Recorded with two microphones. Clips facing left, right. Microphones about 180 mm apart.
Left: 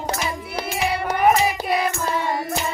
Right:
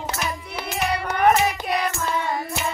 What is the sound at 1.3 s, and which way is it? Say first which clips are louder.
Music: left 1 dB; centre (ahead or behind).